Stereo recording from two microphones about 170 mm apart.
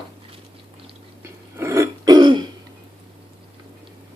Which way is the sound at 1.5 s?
15° right (ahead or behind).